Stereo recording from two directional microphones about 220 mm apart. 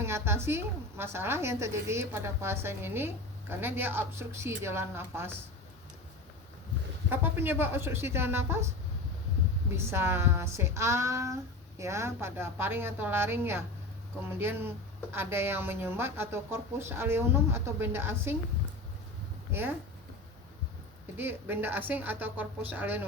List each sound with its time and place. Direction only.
0.0 s speech: 10° right (ahead or behind)
7.1 s speech: 10° right (ahead or behind)
9.7 s speech: 10° right (ahead or behind)
19.5 s speech: 10° right (ahead or behind)
21.2 s speech: 10° right (ahead or behind)